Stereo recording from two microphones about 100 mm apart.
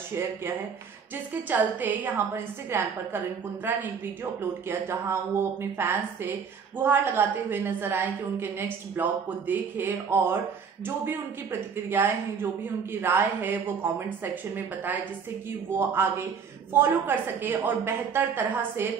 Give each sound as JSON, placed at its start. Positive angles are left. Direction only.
{"t": 0.1, "sound": "speech", "side_deg": -25}